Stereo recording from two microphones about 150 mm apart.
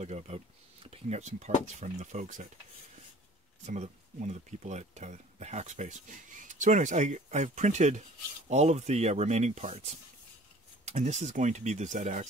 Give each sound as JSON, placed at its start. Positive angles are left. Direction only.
{"t": 0.0, "sound": "speech", "side_deg": -45}
{"t": 3.6, "sound": "speech", "side_deg": -50}